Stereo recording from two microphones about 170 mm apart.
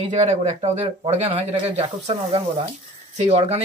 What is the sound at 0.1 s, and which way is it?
Speech, 40° right (ahead or behind).